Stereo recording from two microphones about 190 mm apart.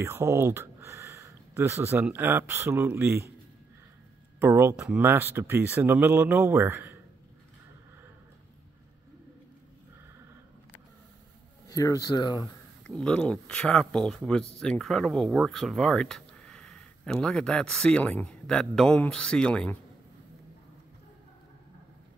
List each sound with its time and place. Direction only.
0.0 s speech: 15° right (ahead or behind)
4.4 s speech: 10° right (ahead or behind)
11.7 s speech: 20° left (ahead or behind)
12.8 s speech: 5° left (ahead or behind)